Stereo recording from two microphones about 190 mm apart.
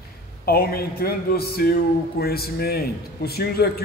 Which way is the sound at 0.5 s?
55° left (ahead or behind).